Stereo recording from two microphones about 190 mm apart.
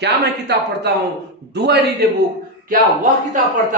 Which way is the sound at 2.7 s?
45° right (ahead or behind).